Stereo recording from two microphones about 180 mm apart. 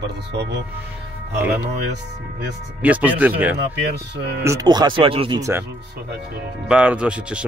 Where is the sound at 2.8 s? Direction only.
10° right (ahead or behind).